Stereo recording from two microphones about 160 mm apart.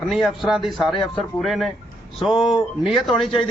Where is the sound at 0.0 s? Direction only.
Centre (ahead or behind).